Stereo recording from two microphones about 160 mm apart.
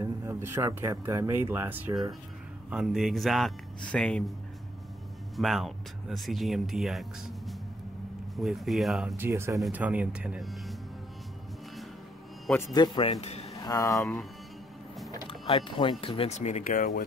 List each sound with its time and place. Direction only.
0.0 s speech: 15° right (ahead or behind)
2.7 s speech: 5° right (ahead or behind)
5.3 s speech: centre (ahead or behind)
9.1 s speech: 15° right (ahead or behind)
12.5 s a man's voice: 25° left (ahead or behind)
13.2 s a sound: 40° left (ahead or behind)
13.6 s speech: 25° left (ahead or behind)
13.9 s speech: 5° left (ahead or behind)
15.0 s speech: 30° left (ahead or behind); by 17.0 s 55° left (ahead or behind)